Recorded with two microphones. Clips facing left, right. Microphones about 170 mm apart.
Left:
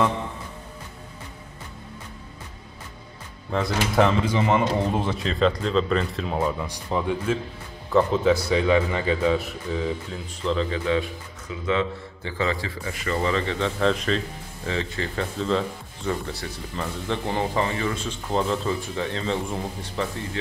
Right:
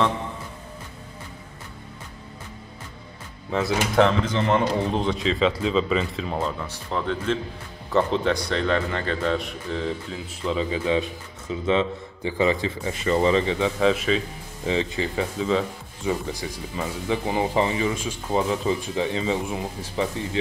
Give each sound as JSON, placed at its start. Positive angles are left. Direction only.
{"t": 3.9, "sound": "a man's voice", "side_deg": 10}
{"t": 6.3, "sound": "a man's voice", "side_deg": 10}
{"t": 10.4, "sound": "a man's voice", "side_deg": -10}
{"t": 14.7, "sound": "speech", "side_deg": -15}